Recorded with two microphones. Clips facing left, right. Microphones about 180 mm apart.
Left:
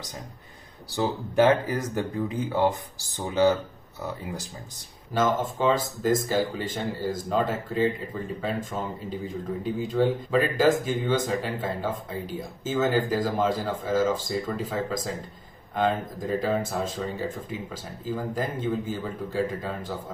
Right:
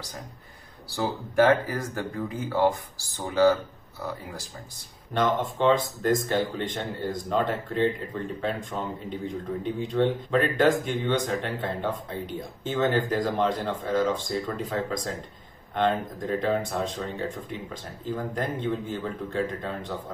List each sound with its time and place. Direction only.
0.8 s speech: 20° left (ahead or behind)
5.1 s speech: 5° left (ahead or behind)